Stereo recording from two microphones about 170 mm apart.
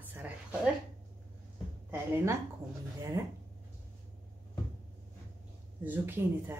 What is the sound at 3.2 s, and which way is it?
Speech, 15° right (ahead or behind).